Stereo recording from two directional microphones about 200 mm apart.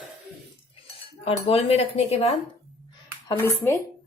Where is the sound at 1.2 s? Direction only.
30° left (ahead or behind).